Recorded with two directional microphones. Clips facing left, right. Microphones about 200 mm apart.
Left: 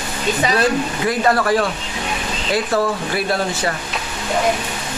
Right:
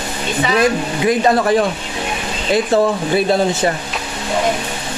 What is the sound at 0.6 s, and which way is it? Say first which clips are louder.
Speech: right 3 dB; 20° right (ahead or behind).